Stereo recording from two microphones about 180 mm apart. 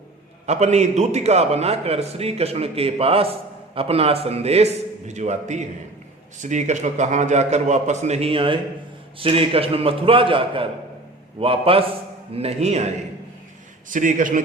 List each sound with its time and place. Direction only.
0.4 s a man's voice: 35° right (ahead or behind)
13.9 s a man's voice: 45° right (ahead or behind)